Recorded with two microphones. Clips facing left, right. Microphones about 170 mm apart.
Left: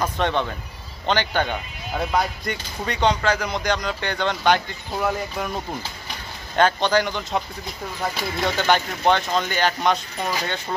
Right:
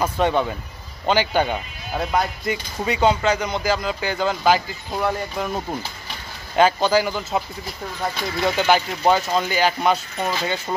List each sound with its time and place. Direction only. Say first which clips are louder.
0.0 s speech: right 3 dB; 10° right (ahead or behind)
8.5 s speech: right 2 dB; 5° right (ahead or behind)